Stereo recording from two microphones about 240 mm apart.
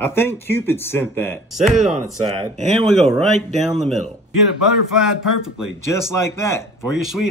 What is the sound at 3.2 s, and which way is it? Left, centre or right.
Speech, centre.